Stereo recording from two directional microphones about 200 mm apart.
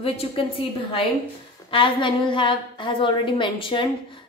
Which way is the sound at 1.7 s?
25° left (ahead or behind).